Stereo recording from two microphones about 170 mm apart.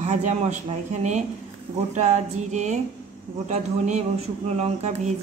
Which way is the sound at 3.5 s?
40° right (ahead or behind).